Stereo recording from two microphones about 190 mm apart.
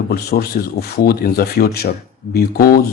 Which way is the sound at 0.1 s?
55° left (ahead or behind).